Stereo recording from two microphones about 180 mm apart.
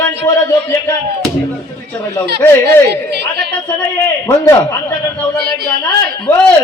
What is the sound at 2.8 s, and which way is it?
Chatter, 65° right (ahead or behind).